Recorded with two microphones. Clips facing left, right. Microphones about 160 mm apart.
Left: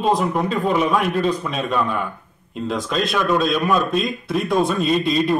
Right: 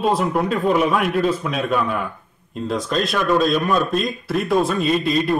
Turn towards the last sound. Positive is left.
turn(degrees=0)  # may be behind; listen again after turning